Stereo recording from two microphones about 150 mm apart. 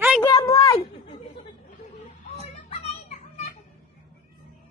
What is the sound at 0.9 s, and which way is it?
Chatter, 40° left (ahead or behind).